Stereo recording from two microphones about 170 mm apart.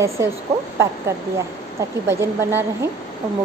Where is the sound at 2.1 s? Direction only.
15° right (ahead or behind).